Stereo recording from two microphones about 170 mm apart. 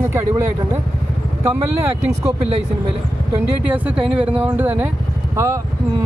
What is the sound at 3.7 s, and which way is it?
Speech, 10° right (ahead or behind).